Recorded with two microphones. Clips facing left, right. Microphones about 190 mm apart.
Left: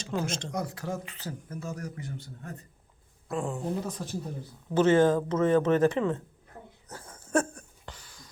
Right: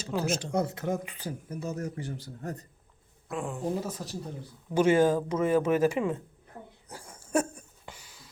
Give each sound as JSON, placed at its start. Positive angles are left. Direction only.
{"t": 0.3, "sound": "speech", "side_deg": -5}
{"t": 0.5, "sound": "speech", "side_deg": -25}
{"t": 3.2, "sound": "speech", "side_deg": 0}
{"t": 6.8, "sound": "a sound", "side_deg": -10}